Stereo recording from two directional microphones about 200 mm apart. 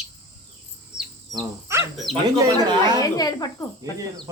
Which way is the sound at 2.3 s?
20° right (ahead or behind).